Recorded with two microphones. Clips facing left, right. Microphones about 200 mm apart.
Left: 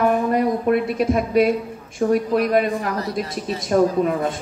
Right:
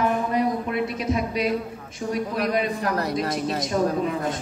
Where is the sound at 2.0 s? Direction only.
70° left (ahead or behind).